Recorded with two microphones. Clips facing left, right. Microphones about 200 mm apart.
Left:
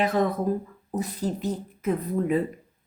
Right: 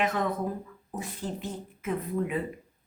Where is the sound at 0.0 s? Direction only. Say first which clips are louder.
Left 5 dB; 35° left (ahead or behind).